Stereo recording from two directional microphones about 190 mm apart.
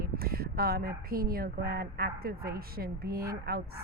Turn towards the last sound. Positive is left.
turn(degrees=-55)  # may be behind; listen again after turning